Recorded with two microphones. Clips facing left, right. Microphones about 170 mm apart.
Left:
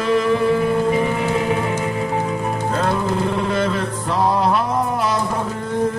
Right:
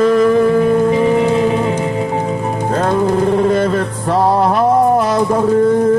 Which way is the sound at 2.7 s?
45° right (ahead or behind).